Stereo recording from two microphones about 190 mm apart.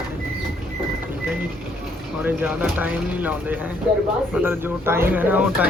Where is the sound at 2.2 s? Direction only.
5° right (ahead or behind).